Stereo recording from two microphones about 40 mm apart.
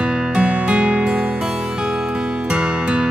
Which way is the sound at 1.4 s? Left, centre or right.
Centre.